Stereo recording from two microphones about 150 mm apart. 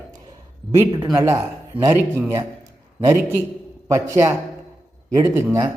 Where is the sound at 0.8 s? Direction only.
20° right (ahead or behind).